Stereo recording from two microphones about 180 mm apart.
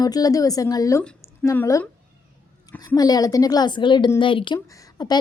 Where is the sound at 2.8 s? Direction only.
20° left (ahead or behind).